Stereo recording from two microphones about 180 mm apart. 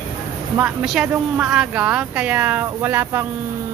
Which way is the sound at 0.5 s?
5° right (ahead or behind).